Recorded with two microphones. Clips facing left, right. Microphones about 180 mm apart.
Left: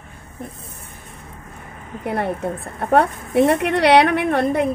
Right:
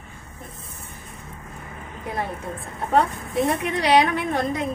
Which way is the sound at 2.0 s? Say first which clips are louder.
Left 7 dB; 65° left (ahead or behind).